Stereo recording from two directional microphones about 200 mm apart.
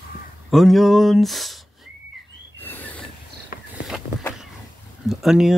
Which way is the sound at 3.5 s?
45° left (ahead or behind).